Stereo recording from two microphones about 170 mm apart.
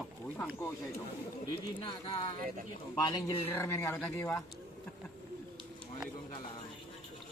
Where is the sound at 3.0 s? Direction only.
25° left (ahead or behind).